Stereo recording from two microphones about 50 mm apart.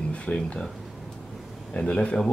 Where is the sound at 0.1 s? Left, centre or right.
Left.